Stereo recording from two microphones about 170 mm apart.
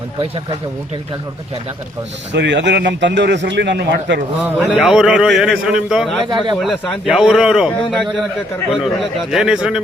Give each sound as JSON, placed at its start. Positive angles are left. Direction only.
{"t": 2.3, "sound": "a man's voice", "side_deg": -90}
{"t": 4.7, "sound": "a man's voice", "side_deg": 0}
{"t": 6.2, "sound": "a man's voice", "side_deg": -25}
{"t": 6.6, "sound": "a man's voice", "side_deg": 0}